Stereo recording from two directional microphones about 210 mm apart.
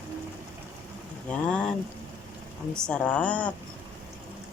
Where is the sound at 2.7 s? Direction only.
5° left (ahead or behind).